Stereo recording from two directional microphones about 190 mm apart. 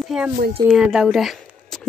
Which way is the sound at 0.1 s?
5° right (ahead or behind).